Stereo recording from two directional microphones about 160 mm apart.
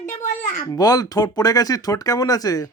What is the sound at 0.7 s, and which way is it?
Speech, 20° left (ahead or behind).